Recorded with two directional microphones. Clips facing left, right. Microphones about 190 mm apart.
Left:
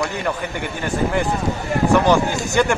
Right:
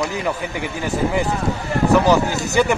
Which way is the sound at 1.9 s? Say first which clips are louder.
Right 1 dB; 5° right (ahead or behind).